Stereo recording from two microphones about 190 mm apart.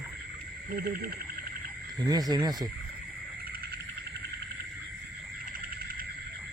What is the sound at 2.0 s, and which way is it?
Speech, 20° right (ahead or behind).